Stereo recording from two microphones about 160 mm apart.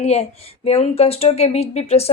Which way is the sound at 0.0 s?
40° left (ahead or behind).